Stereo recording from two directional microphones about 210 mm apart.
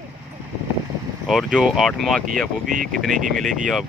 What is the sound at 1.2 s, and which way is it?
Speech, centre (ahead or behind).